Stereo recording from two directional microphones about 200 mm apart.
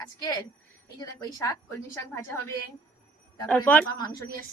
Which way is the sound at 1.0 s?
20° left (ahead or behind).